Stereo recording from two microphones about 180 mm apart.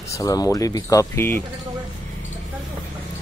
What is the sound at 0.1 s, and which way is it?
Speech, 20° left (ahead or behind).